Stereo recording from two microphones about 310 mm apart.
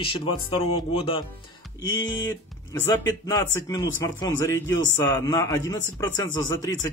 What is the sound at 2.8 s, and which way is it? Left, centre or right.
Speech, centre.